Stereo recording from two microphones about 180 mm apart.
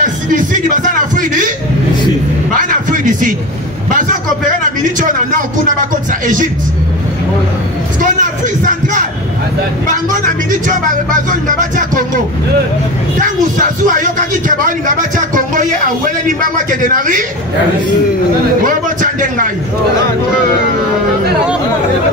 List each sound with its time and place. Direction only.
0.0 s speech: 45° right (ahead or behind)
2.5 s a sound: 45° right (ahead or behind)
3.9 s speech: 45° right (ahead or behind)
8.0 s a man's voice: 45° right (ahead or behind)
10.5 s speech: 45° right (ahead or behind)
13.2 s speech: 45° right (ahead or behind)
18.7 s speech: 45° right (ahead or behind)